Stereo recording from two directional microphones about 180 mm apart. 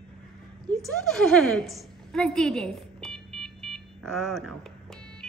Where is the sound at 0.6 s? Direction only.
Centre (ahead or behind).